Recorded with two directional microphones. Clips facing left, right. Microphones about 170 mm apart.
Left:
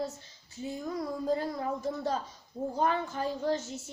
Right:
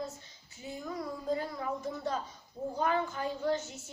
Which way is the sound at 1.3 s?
35° left (ahead or behind).